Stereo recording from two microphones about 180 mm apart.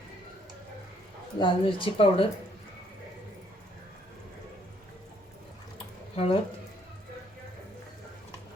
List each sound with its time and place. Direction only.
1.4 s speech: 30° left (ahead or behind)
6.1 s speech: 30° left (ahead or behind)